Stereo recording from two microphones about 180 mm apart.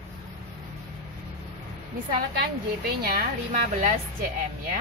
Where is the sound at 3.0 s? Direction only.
55° right (ahead or behind).